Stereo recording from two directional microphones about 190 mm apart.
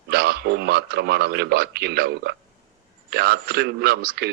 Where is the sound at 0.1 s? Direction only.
60° right (ahead or behind).